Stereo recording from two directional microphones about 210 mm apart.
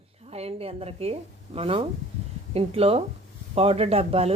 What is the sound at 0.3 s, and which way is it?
Speech, 30° right (ahead or behind).